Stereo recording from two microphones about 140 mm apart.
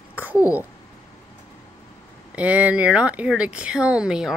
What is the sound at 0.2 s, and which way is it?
Speech, 10° right (ahead or behind).